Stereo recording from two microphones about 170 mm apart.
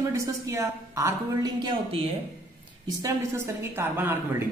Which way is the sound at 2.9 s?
20° right (ahead or behind).